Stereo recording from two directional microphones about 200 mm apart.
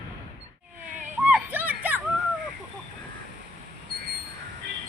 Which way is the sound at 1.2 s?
10° right (ahead or behind).